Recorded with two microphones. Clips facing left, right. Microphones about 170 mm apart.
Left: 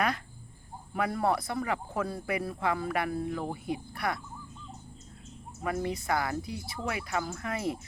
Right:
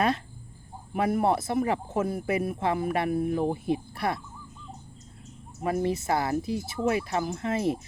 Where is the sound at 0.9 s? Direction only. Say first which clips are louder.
Right 4 dB; 25° right (ahead or behind).